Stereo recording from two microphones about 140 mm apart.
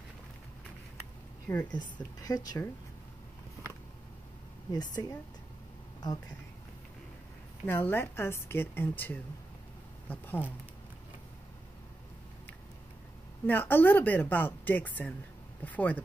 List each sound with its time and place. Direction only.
1.5 s a woman's voice: 10° left (ahead or behind)
2.2 s speech: 30° left (ahead or behind)
4.7 s speech: 30° left (ahead or behind)
7.6 s a woman's voice: 15° left (ahead or behind)
13.5 s a woman's voice: 15° left (ahead or behind)